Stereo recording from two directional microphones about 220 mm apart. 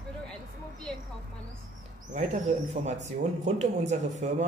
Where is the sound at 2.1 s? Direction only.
30° right (ahead or behind).